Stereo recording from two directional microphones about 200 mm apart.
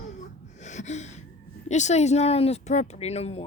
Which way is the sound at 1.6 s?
35° left (ahead or behind).